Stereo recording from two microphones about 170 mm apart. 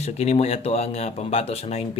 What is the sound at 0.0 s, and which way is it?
Speech, 40° left (ahead or behind).